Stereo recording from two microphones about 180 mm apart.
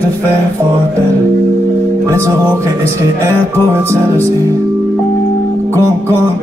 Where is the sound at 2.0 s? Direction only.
15° right (ahead or behind).